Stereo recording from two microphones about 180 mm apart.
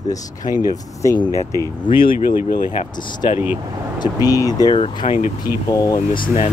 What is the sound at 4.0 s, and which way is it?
Speech, 20° left (ahead or behind).